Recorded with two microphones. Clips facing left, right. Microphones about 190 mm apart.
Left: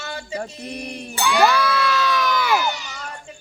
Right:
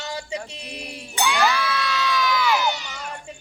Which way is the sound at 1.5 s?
60° left (ahead or behind).